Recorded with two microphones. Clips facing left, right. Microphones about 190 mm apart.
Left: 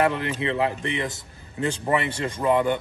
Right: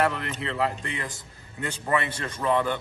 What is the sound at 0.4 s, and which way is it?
Speech, 20° left (ahead or behind).